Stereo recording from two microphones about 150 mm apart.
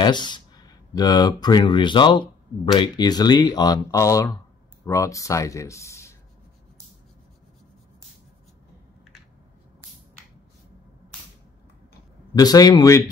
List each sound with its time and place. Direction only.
0.0 s speech: 30° left (ahead or behind)
12.4 s speech: 25° left (ahead or behind)